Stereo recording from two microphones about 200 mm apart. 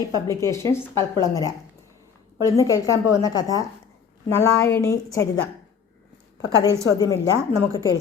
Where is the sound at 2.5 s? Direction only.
15° left (ahead or behind).